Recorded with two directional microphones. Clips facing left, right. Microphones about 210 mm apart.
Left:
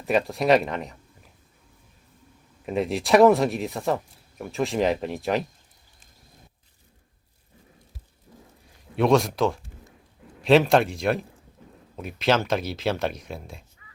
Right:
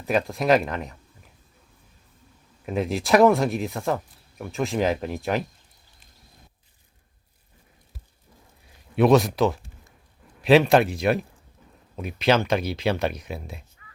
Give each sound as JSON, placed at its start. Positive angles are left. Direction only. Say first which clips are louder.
{"t": 0.0, "sound": "speech", "louder": "left 1 dB", "side_deg": 0}
{"t": 2.6, "sound": "speech", "louder": "even", "side_deg": 0}
{"t": 9.0, "sound": "speech", "louder": "right 2 dB", "side_deg": -5}